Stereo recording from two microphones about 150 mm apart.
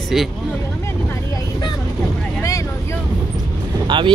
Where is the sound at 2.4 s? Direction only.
20° left (ahead or behind).